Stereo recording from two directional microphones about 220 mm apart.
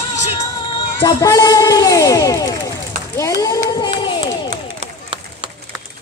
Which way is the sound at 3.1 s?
15° left (ahead or behind).